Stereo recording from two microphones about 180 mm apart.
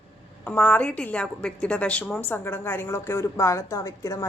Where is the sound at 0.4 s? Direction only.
10° left (ahead or behind).